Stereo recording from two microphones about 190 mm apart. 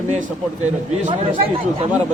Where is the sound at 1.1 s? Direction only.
30° right (ahead or behind).